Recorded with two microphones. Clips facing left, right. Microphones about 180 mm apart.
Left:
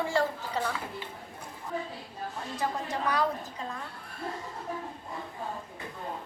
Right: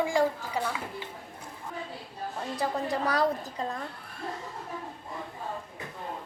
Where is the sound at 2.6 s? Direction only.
35° right (ahead or behind).